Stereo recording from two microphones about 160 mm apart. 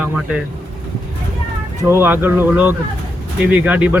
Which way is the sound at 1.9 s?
15° right (ahead or behind).